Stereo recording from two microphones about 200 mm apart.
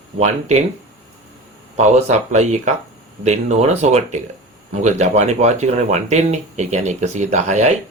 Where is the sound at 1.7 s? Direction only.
35° right (ahead or behind).